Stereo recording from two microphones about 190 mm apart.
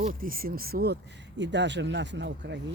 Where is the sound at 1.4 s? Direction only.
70° right (ahead or behind).